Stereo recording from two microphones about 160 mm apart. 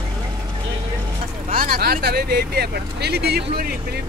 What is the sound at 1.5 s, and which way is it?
Speech, 60° right (ahead or behind).